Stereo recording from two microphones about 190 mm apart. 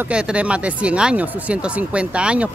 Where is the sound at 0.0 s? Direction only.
5° right (ahead or behind).